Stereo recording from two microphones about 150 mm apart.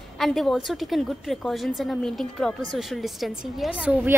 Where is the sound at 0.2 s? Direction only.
Centre (ahead or behind).